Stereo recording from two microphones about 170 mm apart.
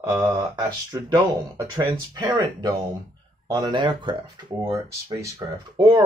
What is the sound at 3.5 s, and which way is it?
Speech, 25° right (ahead or behind).